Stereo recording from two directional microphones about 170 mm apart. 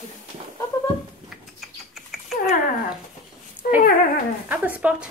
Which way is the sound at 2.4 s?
55° left (ahead or behind).